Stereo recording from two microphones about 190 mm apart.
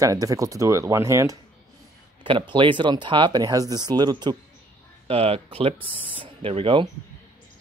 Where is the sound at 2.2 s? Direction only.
25° right (ahead or behind).